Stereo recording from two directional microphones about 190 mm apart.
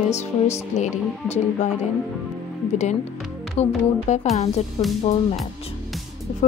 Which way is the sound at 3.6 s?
35° left (ahead or behind).